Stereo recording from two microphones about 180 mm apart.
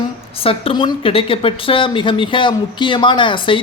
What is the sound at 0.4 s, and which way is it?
A woman's voice, 30° left (ahead or behind).